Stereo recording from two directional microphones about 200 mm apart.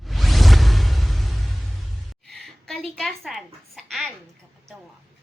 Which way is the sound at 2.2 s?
Centre (ahead or behind).